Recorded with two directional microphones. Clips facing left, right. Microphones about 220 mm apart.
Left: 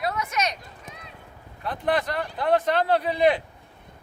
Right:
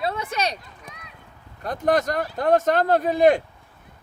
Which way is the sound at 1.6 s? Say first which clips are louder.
Right 4 dB; 45° right (ahead or behind).